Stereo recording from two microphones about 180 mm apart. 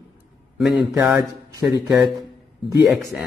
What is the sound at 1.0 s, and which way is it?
Speech, 15° right (ahead or behind).